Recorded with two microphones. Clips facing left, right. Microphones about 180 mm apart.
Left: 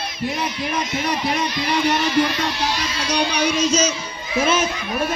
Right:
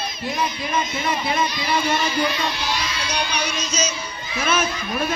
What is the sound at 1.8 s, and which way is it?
Speech, 70° left (ahead or behind).